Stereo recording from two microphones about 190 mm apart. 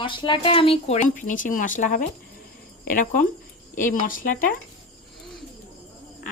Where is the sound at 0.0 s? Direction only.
25° left (ahead or behind).